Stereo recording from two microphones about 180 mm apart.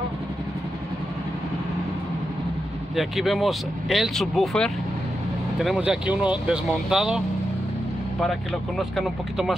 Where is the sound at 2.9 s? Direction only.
Centre (ahead or behind).